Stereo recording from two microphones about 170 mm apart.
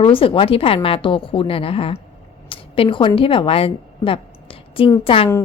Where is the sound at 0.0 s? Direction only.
30° left (ahead or behind).